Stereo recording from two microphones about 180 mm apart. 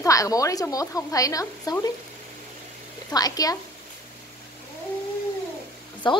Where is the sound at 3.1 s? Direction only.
20° left (ahead or behind).